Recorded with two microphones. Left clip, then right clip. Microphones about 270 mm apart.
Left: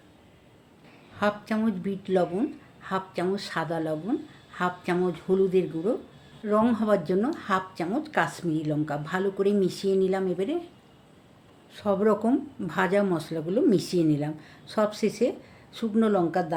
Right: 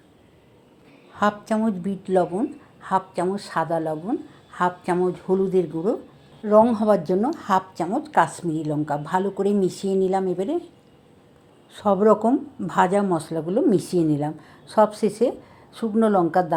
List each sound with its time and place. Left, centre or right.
1.2 s a woman's voice: centre
11.7 s speech: centre